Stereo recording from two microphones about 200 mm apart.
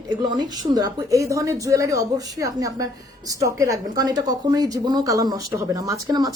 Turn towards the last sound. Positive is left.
turn(degrees=-20)  # may be behind; listen again after turning